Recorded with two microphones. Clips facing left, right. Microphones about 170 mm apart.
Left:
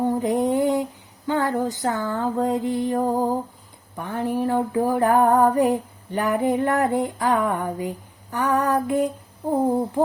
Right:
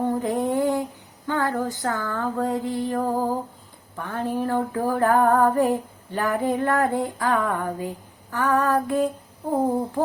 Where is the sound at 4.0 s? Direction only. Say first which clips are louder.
Left 2 dB; 15° left (ahead or behind).